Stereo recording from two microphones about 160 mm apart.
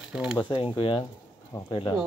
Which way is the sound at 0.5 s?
30° left (ahead or behind).